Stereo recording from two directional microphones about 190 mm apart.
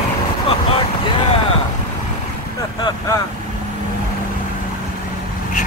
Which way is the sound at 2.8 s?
20° left (ahead or behind).